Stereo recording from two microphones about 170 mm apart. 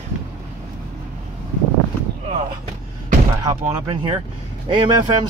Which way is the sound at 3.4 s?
25° right (ahead or behind).